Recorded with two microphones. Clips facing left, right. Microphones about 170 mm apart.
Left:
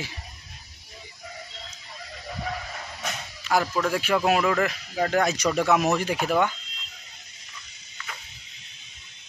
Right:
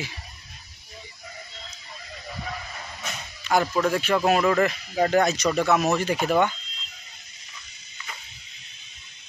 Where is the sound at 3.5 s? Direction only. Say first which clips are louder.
Right 1 dB; 5° left (ahead or behind).